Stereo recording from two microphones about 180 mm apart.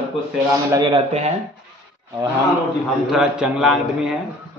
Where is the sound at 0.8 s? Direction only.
35° right (ahead or behind).